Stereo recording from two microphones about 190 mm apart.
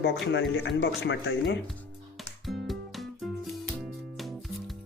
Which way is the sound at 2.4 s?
Centre (ahead or behind).